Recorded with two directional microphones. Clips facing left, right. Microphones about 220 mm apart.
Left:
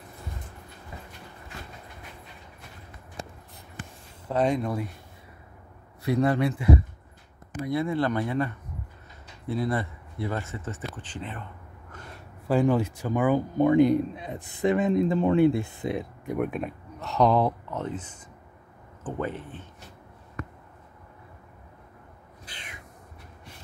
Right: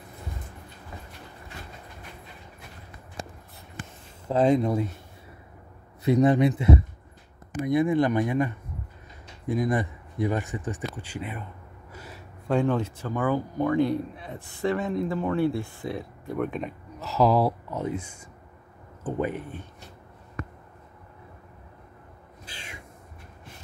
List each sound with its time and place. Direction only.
4.3 s speech: 25° right (ahead or behind)
6.0 s speech: 20° right (ahead or behind)
9.5 s speech: 15° right (ahead or behind)
11.9 s gasp: 5° right (ahead or behind)
12.4 s a man's voice: 5° left (ahead or behind)
16.3 s speech: 5° left (ahead or behind); by 19.6 s 15° right (ahead or behind)
22.4 s owl: 25° right (ahead or behind)